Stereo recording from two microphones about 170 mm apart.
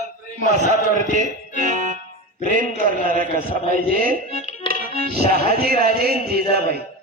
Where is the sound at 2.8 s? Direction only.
55° right (ahead or behind).